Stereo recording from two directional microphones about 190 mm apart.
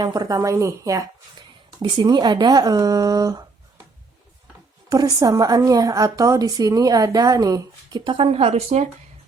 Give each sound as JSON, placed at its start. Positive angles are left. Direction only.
{"t": 0.0, "sound": "a woman's voice", "side_deg": -20}
{"t": 4.9, "sound": "a woman's voice", "side_deg": -20}